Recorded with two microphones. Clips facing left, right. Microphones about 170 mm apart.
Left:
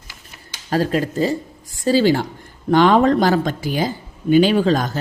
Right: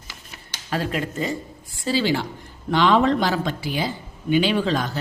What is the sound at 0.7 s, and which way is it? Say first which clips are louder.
Speech: left 6 dB; 40° left (ahead or behind).